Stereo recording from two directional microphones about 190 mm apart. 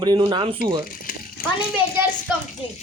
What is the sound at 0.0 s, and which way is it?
Speech, 25° right (ahead or behind).